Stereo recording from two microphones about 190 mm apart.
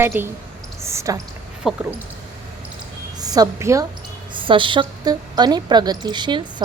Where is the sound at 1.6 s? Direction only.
5° right (ahead or behind).